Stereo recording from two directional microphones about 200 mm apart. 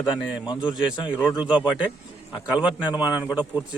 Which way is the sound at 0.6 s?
5° right (ahead or behind).